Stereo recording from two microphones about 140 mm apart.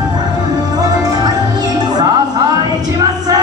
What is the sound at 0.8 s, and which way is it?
Music, 30° right (ahead or behind).